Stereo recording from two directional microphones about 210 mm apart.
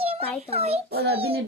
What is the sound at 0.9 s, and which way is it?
Speech, 50° right (ahead or behind).